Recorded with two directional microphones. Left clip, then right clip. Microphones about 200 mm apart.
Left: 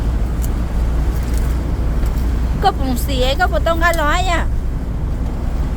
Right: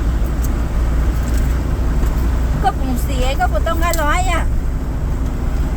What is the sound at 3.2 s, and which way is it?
Speech, 15° left (ahead or behind).